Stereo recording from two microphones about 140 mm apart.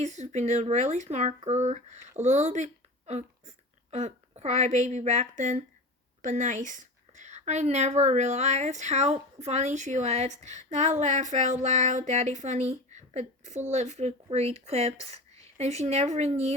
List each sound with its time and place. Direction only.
0.0 s a woman's voice: 55° right (ahead or behind)